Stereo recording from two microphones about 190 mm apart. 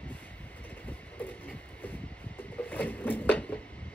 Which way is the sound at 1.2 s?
10° left (ahead or behind).